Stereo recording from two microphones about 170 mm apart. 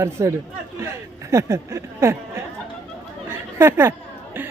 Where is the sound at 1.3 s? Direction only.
15° right (ahead or behind).